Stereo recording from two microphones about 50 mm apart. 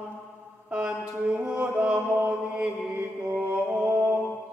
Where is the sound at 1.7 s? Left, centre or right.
Right.